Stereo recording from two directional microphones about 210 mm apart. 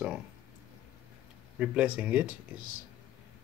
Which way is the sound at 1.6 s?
5° right (ahead or behind).